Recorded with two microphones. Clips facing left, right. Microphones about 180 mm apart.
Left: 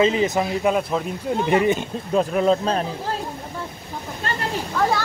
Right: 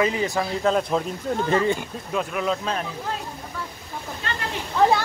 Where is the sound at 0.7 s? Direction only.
5° left (ahead or behind).